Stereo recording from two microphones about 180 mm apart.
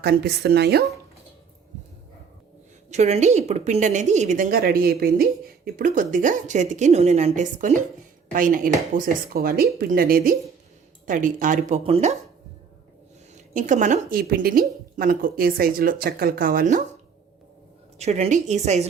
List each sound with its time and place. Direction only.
0.0 s speech: 65° right (ahead or behind)
2.9 s a woman's voice: 40° right (ahead or behind)
13.3 s a woman's voice: 45° right (ahead or behind)
17.9 s a woman's voice: 35° right (ahead or behind)